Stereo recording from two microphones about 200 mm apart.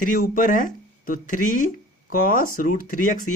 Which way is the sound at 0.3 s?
40° left (ahead or behind).